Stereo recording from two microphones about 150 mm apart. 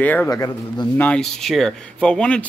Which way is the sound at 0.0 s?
10° left (ahead or behind).